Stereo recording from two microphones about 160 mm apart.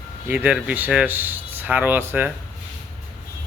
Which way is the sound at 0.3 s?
10° right (ahead or behind).